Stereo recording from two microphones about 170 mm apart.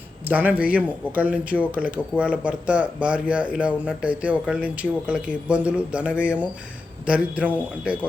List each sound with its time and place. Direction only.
0.3 s speech: 10° right (ahead or behind)